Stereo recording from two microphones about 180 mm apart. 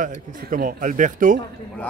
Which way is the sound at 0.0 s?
50° right (ahead or behind).